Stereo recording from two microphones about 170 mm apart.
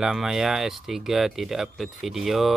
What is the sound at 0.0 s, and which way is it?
Speech, centre (ahead or behind).